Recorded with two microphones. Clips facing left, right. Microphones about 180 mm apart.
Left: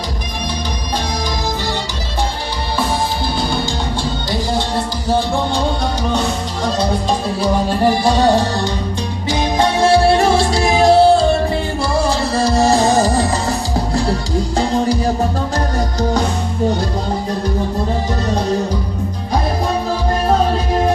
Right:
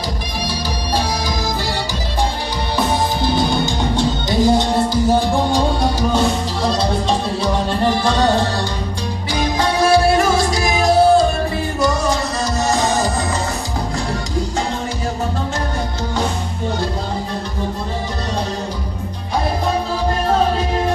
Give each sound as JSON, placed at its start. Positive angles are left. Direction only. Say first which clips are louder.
{"t": 7.8, "sound": "music", "louder": "left 3 dB", "side_deg": 10}
{"t": 9.3, "sound": "music", "louder": "left 3 dB", "side_deg": 25}